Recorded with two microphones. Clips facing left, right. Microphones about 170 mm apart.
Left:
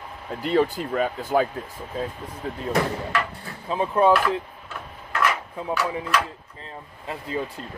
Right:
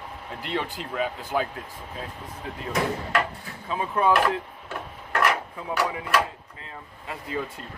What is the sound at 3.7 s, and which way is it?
Speech, 30° left (ahead or behind).